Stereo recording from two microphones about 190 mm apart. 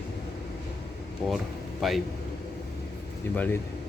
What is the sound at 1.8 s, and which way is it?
Speech, centre (ahead or behind).